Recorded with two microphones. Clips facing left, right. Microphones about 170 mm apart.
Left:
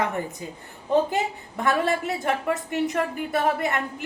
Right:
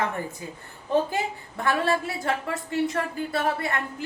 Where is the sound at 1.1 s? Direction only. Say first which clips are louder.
Left 2 dB; 20° left (ahead or behind).